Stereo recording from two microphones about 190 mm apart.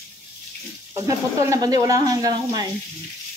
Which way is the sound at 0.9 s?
15° right (ahead or behind).